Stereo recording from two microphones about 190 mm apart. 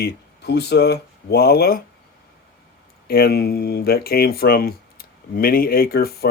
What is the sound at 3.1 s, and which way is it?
Speech, 55° left (ahead or behind).